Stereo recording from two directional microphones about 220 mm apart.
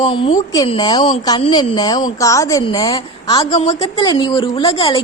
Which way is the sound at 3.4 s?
25° left (ahead or behind).